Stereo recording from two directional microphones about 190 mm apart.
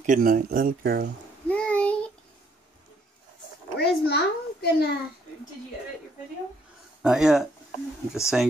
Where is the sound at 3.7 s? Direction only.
60° left (ahead or behind).